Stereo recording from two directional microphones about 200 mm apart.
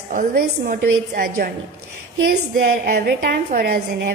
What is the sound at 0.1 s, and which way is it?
A woman's voice, 45° right (ahead or behind).